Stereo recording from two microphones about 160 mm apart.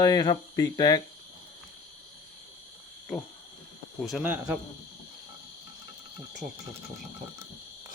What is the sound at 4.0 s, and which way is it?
Speech, 5° right (ahead or behind).